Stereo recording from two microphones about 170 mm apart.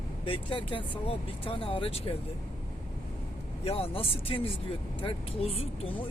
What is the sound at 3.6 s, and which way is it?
Speech, 35° left (ahead or behind).